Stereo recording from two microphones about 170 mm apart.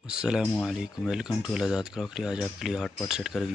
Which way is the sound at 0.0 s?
5° right (ahead or behind).